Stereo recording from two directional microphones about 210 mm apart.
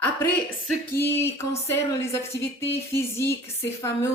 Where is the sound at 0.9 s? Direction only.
10° left (ahead or behind).